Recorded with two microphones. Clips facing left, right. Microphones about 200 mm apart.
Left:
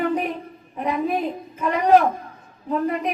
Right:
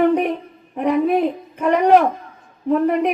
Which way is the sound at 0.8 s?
65° right (ahead or behind).